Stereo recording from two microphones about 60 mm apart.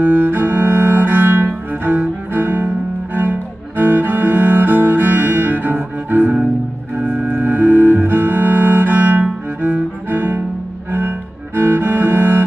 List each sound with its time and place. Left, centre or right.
0.0 s cello: right
7.0 s music: right
10.9 s cello: right